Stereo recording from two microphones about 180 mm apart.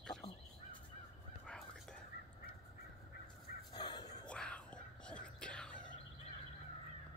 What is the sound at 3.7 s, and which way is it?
Crow, 25° left (ahead or behind).